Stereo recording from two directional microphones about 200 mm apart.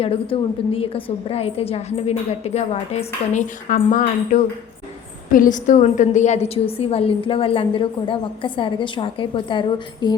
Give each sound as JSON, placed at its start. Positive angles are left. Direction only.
{"t": 0.0, "sound": "a woman's voice", "side_deg": 30}